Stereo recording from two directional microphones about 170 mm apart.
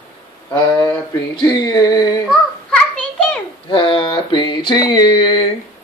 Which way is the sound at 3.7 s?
30° left (ahead or behind).